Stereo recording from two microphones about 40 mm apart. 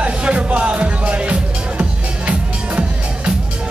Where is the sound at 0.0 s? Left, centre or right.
Right.